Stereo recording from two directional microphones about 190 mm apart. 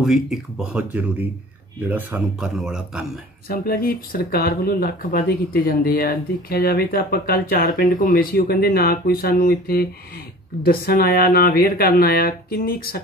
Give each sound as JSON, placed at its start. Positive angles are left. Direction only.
{"t": 0.0, "sound": "speech", "side_deg": 0}
{"t": 3.4, "sound": "speech", "side_deg": 50}